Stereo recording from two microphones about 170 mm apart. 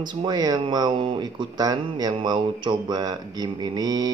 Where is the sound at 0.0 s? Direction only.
25° right (ahead or behind).